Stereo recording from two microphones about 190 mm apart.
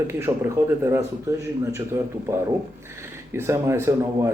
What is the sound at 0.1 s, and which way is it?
Speech, 15° right (ahead or behind).